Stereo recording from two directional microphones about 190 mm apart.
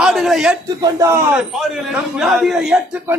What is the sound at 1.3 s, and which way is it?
A man's voice, 5° right (ahead or behind).